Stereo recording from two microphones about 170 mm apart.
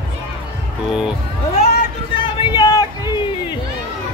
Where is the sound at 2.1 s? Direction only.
30° left (ahead or behind).